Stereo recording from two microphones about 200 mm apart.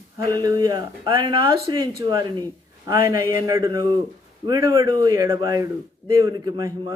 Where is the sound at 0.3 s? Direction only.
20° right (ahead or behind).